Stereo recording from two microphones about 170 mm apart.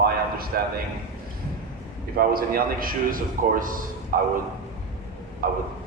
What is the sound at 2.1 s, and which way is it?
A man's voice, 60° right (ahead or behind).